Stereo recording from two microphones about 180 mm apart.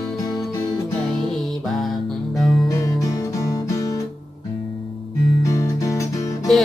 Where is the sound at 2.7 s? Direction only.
15° left (ahead or behind).